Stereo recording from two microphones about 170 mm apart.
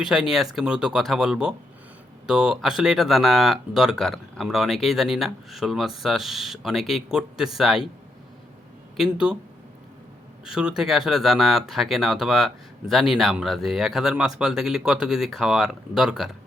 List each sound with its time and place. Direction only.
0.0 s speech: 5° right (ahead or behind)
9.0 s speech: 5° right (ahead or behind)
10.4 s speech: 5° right (ahead or behind)